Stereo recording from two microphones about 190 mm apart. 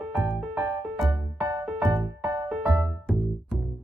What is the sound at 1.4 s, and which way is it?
Music, 15° right (ahead or behind).